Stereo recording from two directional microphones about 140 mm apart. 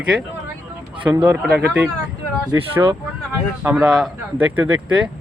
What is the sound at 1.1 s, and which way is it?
Speech, 20° right (ahead or behind).